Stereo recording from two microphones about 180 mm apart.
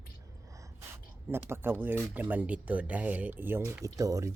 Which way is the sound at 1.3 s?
10° right (ahead or behind).